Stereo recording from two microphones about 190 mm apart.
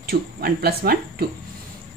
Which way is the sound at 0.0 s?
55° right (ahead or behind).